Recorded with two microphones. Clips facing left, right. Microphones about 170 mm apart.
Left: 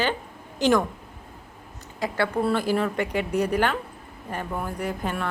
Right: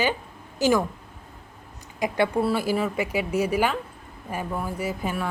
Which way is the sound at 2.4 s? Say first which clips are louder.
Even; 5° right (ahead or behind).